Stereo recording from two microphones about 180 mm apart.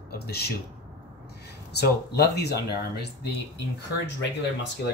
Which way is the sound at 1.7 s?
65° left (ahead or behind).